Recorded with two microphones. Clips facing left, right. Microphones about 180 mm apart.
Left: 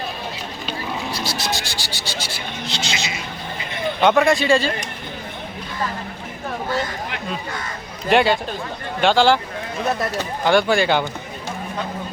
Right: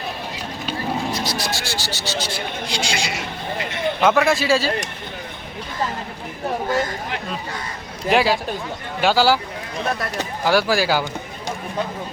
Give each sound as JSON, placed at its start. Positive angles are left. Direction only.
{"t": 1.1, "sound": "music", "side_deg": 25}
{"t": 2.6, "sound": "a sound", "side_deg": -10}
{"t": 3.2, "sound": "a sound", "side_deg": -75}
{"t": 4.0, "sound": "speech", "side_deg": 0}
{"t": 8.1, "sound": "speech", "side_deg": 0}
{"t": 10.4, "sound": "speech", "side_deg": -5}